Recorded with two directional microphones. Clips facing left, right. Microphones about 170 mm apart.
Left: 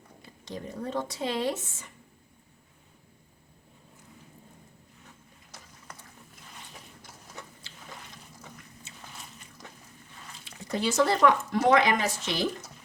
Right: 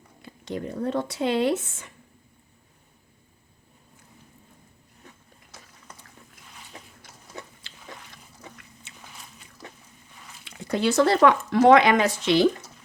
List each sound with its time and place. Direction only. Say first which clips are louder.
0.2 s speech: right 7 dB; 65° right (ahead or behind)
10.4 s speech: right 5 dB; 70° right (ahead or behind)